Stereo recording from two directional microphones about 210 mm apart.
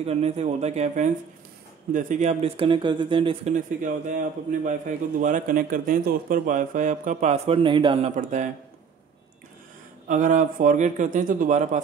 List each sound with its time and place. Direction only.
0.0 s a man's voice: 30° right (ahead or behind)
3.5 s a man's voice: 35° right (ahead or behind)
8.2 s a man's voice: 35° right (ahead or behind)
10.0 s a man's voice: 35° right (ahead or behind)